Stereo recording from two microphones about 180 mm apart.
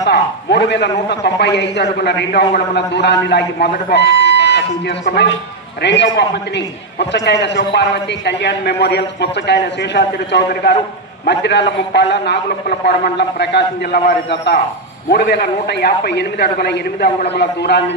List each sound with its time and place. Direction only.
0.0 s a man's voice: 70° left (ahead or behind)